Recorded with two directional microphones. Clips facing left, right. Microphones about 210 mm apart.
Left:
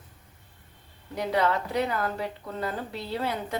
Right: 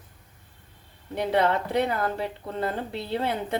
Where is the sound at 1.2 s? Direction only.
30° right (ahead or behind).